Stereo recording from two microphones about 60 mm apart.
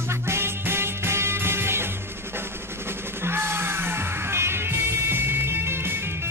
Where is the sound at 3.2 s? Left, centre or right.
Right.